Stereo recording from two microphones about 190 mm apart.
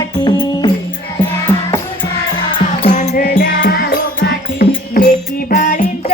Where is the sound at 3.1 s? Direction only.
55° left (ahead or behind).